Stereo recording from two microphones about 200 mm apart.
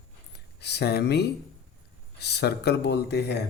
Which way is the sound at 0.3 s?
55° left (ahead or behind).